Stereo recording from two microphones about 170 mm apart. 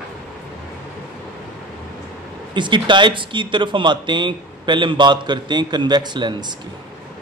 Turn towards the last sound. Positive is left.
turn(degrees=-25)  # may be behind; listen again after turning